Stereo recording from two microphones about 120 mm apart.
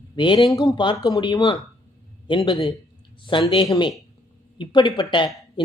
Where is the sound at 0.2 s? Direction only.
40° left (ahead or behind).